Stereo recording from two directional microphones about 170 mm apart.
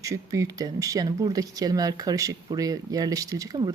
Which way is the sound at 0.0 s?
20° right (ahead or behind).